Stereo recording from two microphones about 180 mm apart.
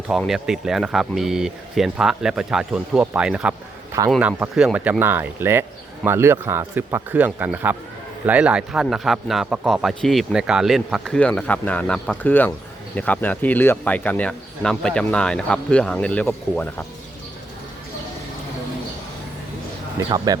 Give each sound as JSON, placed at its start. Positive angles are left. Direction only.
{"t": 0.1, "sound": "speech", "side_deg": 0}
{"t": 20.0, "sound": "speech", "side_deg": -20}